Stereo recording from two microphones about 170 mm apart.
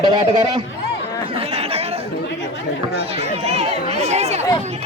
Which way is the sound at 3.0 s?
35° right (ahead or behind).